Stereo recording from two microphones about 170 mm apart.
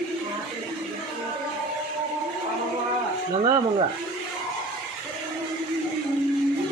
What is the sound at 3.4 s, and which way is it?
Speech, 30° right (ahead or behind).